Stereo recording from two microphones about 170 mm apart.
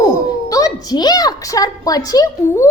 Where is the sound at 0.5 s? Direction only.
20° left (ahead or behind).